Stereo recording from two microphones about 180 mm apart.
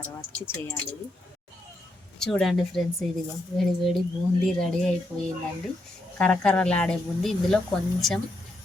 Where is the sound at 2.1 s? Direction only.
5° left (ahead or behind).